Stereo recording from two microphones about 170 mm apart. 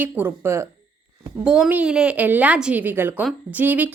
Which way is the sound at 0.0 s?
10° right (ahead or behind).